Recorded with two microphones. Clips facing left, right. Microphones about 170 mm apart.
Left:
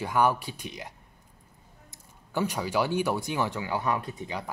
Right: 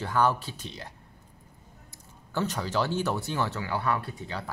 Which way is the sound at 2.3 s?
10° left (ahead or behind).